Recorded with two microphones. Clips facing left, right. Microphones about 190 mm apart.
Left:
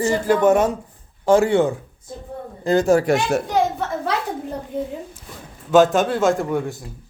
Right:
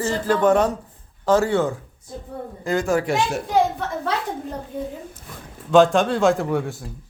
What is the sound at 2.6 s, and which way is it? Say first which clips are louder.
Speech: left 5 dB; 40° left (ahead or behind).